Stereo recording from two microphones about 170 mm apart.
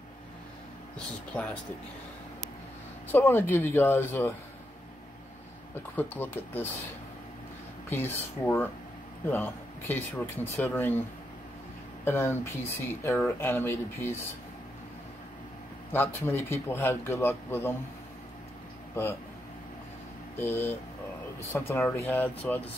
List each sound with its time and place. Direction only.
0.9 s speech: 5° left (ahead or behind)
3.1 s speech: 10° left (ahead or behind)
5.9 s speech: 10° left (ahead or behind)
7.9 s speech: 10° left (ahead or behind)
12.0 s speech: 10° left (ahead or behind)
15.9 s speech: 15° left (ahead or behind)
20.3 s speech: 15° left (ahead or behind)